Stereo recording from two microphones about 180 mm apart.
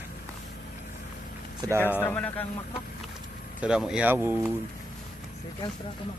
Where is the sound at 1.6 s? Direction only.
20° right (ahead or behind).